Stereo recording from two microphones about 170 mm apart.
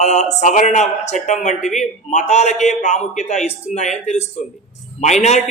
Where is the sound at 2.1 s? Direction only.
40° left (ahead or behind).